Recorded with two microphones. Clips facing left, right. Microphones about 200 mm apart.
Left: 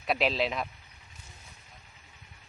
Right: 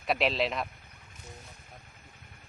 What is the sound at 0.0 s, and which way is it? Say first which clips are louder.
Speech: even; centre (ahead or behind).